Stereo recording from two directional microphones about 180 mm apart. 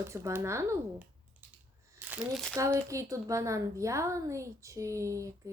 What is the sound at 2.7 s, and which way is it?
A woman's voice, 15° right (ahead or behind).